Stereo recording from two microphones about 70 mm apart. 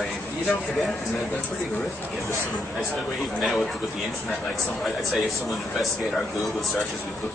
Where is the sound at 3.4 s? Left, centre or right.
Centre.